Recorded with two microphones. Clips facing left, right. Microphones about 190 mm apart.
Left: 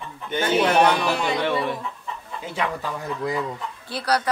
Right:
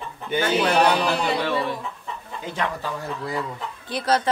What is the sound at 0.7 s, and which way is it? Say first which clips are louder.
Speech: even; 35° right (ahead or behind).